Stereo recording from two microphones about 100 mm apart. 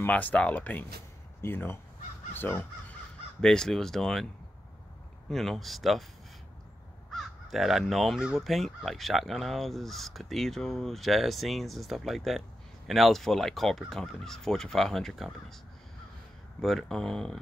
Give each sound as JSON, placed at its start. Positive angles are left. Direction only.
{"t": 0.0, "sound": "speech", "side_deg": 15}
{"t": 3.3, "sound": "speech", "side_deg": 5}
{"t": 5.3, "sound": "speech", "side_deg": 5}
{"t": 7.1, "sound": "crow", "side_deg": 0}
{"t": 7.8, "sound": "speech", "side_deg": 0}
{"t": 16.6, "sound": "speech", "side_deg": 5}